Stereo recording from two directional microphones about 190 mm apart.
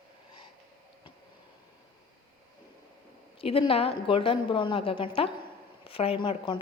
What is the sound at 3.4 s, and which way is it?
A woman's voice, 30° left (ahead or behind).